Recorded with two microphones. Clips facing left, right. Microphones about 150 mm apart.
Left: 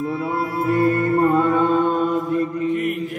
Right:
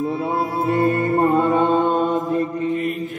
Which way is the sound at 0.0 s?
25° right (ahead or behind).